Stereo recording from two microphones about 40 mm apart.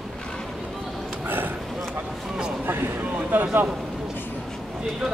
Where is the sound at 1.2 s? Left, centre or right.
Right.